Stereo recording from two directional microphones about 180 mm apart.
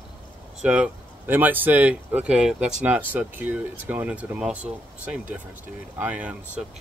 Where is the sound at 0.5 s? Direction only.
5° right (ahead or behind).